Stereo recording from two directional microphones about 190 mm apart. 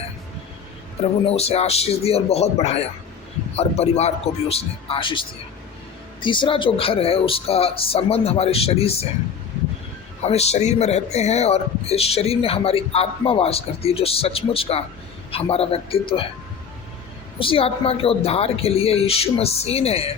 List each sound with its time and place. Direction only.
1.2 s speech: 30° left (ahead or behind)
6.2 s speech: 25° left (ahead or behind)
10.2 s speech: 35° left (ahead or behind)
17.4 s speech: 30° left (ahead or behind)